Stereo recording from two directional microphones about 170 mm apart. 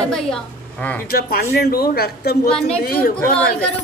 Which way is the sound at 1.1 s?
65° left (ahead or behind).